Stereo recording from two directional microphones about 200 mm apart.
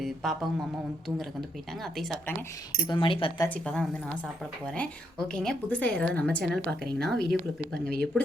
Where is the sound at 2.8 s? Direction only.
25° left (ahead or behind).